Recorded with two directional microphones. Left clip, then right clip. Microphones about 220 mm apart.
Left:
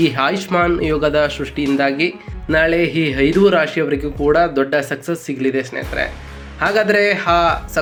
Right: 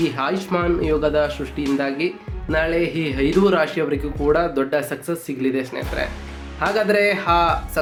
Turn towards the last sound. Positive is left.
turn(degrees=15)  # may be behind; listen again after turning